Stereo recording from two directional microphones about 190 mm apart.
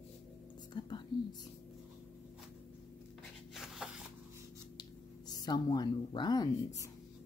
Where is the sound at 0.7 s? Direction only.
25° left (ahead or behind).